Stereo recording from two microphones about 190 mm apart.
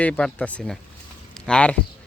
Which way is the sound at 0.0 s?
5° left (ahead or behind).